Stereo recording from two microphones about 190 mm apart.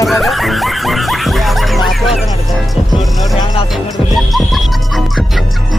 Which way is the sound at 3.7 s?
Centre (ahead or behind).